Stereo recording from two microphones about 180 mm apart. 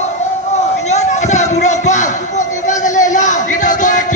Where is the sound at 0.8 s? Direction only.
40° left (ahead or behind).